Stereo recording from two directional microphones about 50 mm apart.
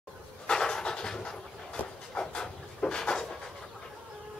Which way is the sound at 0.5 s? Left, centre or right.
Centre.